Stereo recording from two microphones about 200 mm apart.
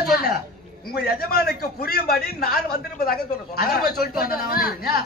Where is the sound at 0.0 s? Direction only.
50° left (ahead or behind).